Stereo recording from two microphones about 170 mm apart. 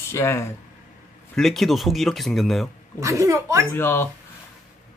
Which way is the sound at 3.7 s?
15° left (ahead or behind).